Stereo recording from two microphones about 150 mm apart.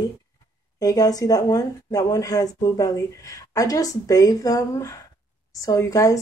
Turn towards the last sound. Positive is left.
turn(degrees=20)  # may be behind; listen again after turning